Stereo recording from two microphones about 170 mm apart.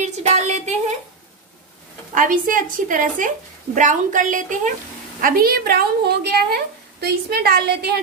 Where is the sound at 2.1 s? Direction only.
55° right (ahead or behind).